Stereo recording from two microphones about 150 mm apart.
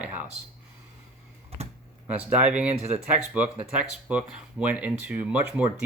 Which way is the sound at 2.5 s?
10° right (ahead or behind).